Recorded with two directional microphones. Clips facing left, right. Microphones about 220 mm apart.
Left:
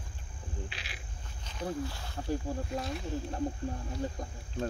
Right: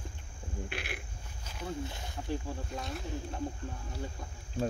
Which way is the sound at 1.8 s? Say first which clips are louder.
Left 2 dB; 20° right (ahead or behind).